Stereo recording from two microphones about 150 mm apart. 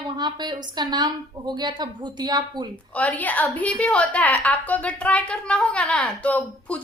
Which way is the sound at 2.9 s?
10° left (ahead or behind).